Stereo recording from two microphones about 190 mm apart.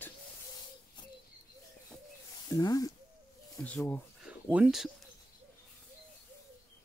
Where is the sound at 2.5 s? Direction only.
20° left (ahead or behind).